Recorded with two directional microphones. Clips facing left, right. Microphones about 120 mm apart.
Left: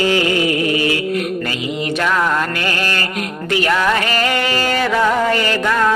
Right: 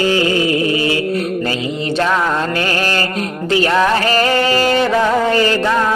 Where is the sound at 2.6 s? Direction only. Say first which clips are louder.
Right 3 dB; 30° right (ahead or behind).